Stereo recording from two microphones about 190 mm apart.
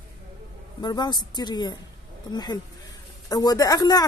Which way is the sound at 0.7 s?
20° left (ahead or behind).